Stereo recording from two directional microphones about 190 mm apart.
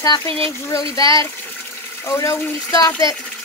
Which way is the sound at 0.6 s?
15° left (ahead or behind).